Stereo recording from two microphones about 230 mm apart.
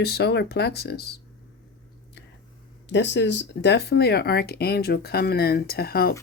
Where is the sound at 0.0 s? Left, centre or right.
Left.